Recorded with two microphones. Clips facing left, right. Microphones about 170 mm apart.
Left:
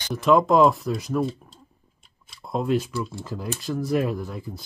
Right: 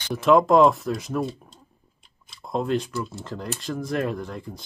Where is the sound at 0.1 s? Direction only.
Centre (ahead or behind).